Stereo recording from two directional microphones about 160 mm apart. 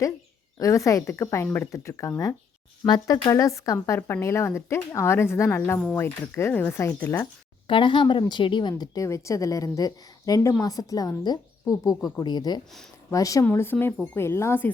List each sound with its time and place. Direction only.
0.6 s a woman's voice: 20° left (ahead or behind)
7.7 s a woman's voice: 30° left (ahead or behind)
8.7 s a woman's voice: 20° left (ahead or behind)
12.2 s a woman's voice: 25° left (ahead or behind)